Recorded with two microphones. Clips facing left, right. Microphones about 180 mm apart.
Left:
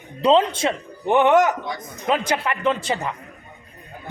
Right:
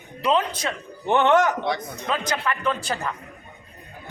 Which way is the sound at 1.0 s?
10° left (ahead or behind).